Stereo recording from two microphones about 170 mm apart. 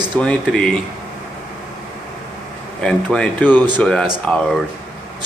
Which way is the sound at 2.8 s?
5° left (ahead or behind).